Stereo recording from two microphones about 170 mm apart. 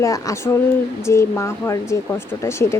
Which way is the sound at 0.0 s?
20° left (ahead or behind).